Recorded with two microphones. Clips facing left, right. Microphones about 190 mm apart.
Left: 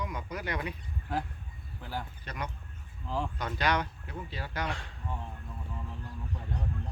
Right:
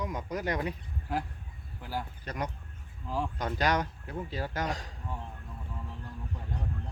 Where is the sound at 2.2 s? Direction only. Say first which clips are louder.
Right 3 dB; 40° right (ahead or behind).